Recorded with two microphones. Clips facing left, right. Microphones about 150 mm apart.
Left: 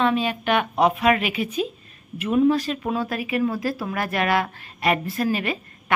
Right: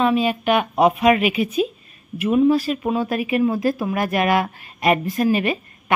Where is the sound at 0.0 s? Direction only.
10° right (ahead or behind).